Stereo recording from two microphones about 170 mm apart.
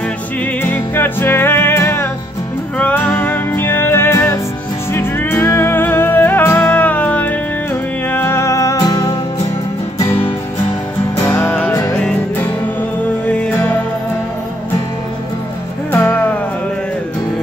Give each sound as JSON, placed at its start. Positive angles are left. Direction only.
{"t": 0.6, "sound": "music", "side_deg": 10}
{"t": 11.2, "sound": "music", "side_deg": 15}
{"t": 15.9, "sound": "music", "side_deg": 15}